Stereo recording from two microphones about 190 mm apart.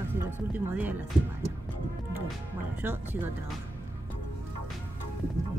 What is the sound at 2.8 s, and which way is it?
Speech, 10° right (ahead or behind).